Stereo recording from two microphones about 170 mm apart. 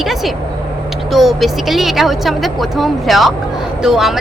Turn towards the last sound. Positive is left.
turn(degrees=-5)  # may be behind; listen again after turning